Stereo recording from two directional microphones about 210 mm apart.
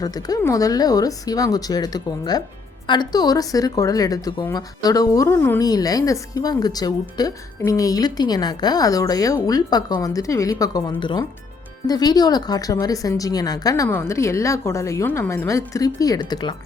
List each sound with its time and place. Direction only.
0.0 s speech: 15° left (ahead or behind)